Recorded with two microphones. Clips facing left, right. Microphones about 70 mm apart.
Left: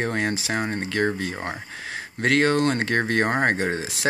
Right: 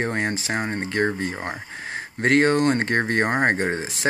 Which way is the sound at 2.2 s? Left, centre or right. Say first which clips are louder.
Right 2 dB; right.